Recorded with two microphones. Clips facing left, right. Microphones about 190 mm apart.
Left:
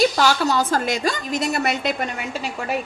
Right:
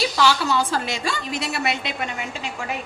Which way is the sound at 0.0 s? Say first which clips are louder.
Left 3 dB; 45° left (ahead or behind).